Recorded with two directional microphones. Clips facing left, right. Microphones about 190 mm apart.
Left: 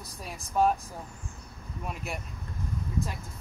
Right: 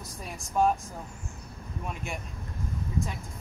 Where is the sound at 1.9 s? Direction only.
Centre (ahead or behind).